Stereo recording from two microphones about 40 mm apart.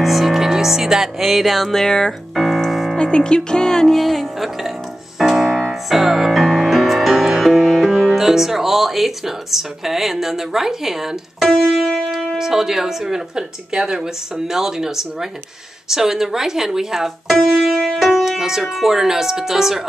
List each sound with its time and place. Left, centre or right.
0.0 s music: centre
1.7 s speech: centre
2.3 s piano: centre
2.7 s music: centre
3.0 s music: left
3.9 s music: centre
8.0 s speech: centre
11.7 s music: centre
12.4 s speech: centre
17.3 s music: centre
17.7 s speech: centre